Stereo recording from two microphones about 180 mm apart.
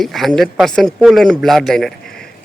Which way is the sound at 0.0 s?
Centre (ahead or behind).